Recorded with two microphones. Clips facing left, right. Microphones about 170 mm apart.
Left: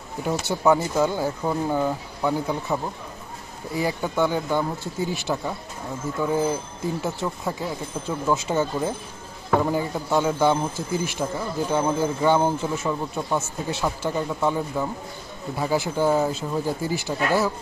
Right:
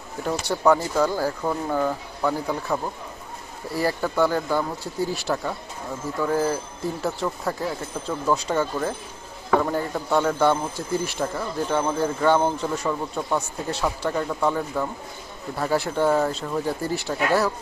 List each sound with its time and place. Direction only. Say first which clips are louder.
0.2 s speech: even; 5° left (ahead or behind)
1.0 s speech: even; 25° left (ahead or behind)
1.4 s speech: left 1 dB; 10° left (ahead or behind)
3.7 s speech: right 1 dB; centre (ahead or behind)